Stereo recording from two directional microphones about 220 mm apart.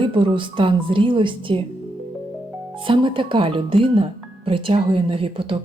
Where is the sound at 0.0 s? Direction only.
25° right (ahead or behind).